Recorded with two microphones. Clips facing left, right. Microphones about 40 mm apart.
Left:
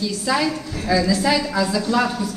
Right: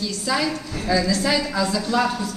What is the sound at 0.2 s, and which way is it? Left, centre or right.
A woman's voice, centre.